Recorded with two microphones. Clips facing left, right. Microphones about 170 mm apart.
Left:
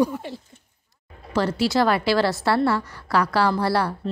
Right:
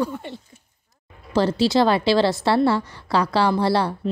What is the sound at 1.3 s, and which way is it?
A woman's voice, 25° right (ahead or behind).